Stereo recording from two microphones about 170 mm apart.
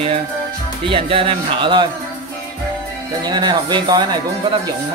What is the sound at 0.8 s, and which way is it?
Speech, 30° right (ahead or behind).